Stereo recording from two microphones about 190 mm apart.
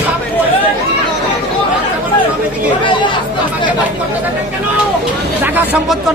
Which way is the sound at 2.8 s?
25° left (ahead or behind).